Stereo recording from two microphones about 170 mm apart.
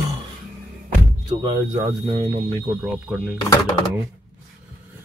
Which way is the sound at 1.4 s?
20° right (ahead or behind).